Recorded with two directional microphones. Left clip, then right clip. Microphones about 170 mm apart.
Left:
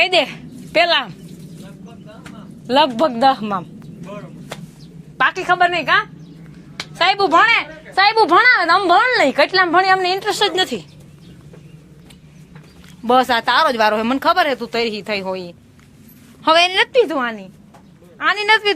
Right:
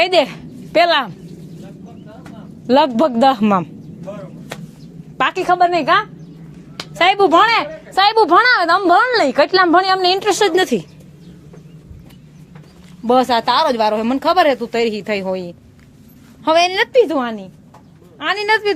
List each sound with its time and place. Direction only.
0.0 s speech: 35° right (ahead or behind)
2.6 s a woman's voice: 45° right (ahead or behind)
5.1 s a woman's voice: 50° right (ahead or behind)
13.1 s speech: 5° right (ahead or behind); by 15.5 s 30° right (ahead or behind)
16.4 s speech: 10° right (ahead or behind)
16.9 s a woman's voice: 30° right (ahead or behind)